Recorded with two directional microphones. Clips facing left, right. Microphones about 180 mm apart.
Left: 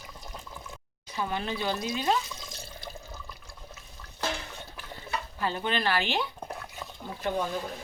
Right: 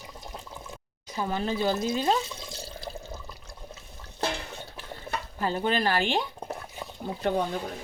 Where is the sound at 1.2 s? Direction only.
40° right (ahead or behind).